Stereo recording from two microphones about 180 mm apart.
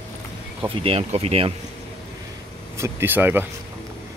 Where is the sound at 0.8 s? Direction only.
35° right (ahead or behind).